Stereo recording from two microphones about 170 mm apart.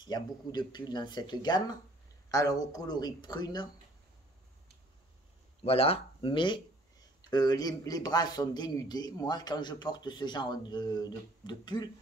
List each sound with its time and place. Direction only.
0.0 s speech: 25° left (ahead or behind)
5.6 s speech: 35° left (ahead or behind)